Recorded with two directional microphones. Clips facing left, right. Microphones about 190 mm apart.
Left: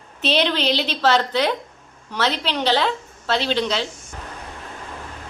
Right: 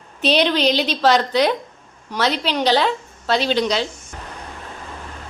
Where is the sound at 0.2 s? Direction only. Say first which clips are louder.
Right 3 dB; 15° right (ahead or behind).